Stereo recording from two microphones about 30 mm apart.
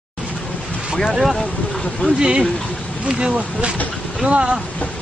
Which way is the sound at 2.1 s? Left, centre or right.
Right.